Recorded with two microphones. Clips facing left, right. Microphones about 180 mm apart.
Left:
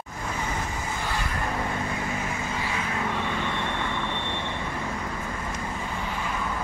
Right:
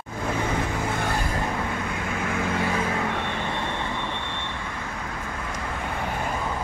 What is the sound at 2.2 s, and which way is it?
Vehicle, 60° right (ahead or behind).